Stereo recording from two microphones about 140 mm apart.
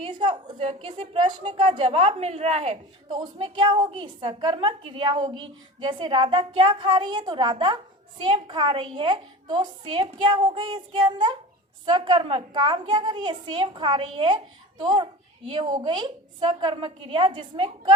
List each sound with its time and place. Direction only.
0.0 s a woman's voice: 35° right (ahead or behind)
3.1 s a woman's voice: 35° right (ahead or behind)
15.4 s a woman's voice: 35° right (ahead or behind)